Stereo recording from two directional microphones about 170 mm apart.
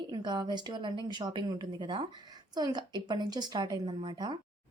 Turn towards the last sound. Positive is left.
turn(degrees=-25)  # may be behind; listen again after turning